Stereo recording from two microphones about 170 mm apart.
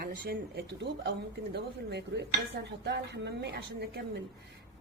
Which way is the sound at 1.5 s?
80° right.